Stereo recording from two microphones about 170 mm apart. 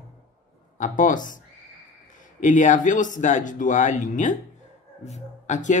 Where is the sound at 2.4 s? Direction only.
45° left (ahead or behind).